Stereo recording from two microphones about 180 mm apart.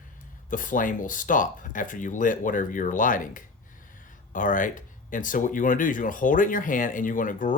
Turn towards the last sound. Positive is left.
turn(degrees=45)  # may be behind; listen again after turning